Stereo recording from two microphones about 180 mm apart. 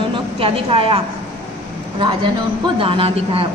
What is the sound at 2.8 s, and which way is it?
Speech, 30° right (ahead or behind).